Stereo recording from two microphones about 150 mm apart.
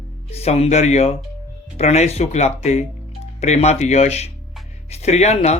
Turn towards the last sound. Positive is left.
turn(degrees=45)  # may be behind; listen again after turning